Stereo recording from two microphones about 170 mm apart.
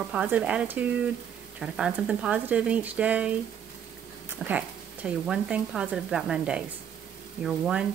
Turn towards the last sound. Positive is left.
turn(degrees=-5)  # may be behind; listen again after turning